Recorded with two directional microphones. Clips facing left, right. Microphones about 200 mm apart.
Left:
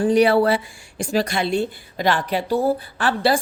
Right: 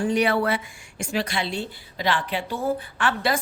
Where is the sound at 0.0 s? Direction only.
35° left (ahead or behind).